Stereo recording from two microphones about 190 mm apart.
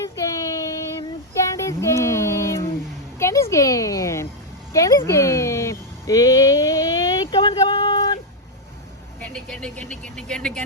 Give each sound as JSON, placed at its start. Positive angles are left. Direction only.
{"t": 0.3, "sound": "child singing", "side_deg": 15}
{"t": 1.6, "sound": "a sound", "side_deg": 15}
{"t": 9.2, "sound": "speech", "side_deg": 5}